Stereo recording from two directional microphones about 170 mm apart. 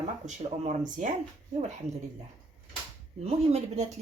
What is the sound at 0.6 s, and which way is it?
Speech, 45° right (ahead or behind).